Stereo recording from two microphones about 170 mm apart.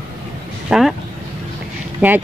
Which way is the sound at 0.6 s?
Centre (ahead or behind).